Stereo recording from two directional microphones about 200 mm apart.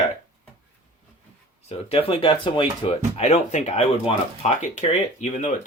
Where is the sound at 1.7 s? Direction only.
30° left (ahead or behind).